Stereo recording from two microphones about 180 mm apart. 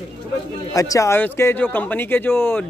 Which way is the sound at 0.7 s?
20° left (ahead or behind).